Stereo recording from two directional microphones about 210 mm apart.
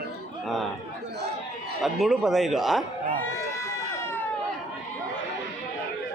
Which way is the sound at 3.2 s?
10° left (ahead or behind).